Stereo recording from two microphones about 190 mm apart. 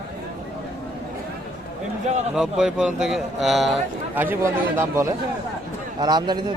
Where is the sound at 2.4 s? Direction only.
5° right (ahead or behind).